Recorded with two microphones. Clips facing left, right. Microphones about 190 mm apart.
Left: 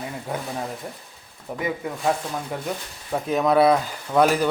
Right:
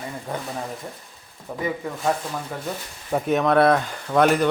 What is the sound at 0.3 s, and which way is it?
Speech, 5° left (ahead or behind).